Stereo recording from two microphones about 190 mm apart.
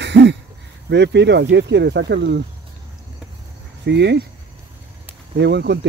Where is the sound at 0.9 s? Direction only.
65° right (ahead or behind).